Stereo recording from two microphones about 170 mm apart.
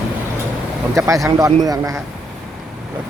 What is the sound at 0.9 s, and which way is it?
Speech, 20° right (ahead or behind).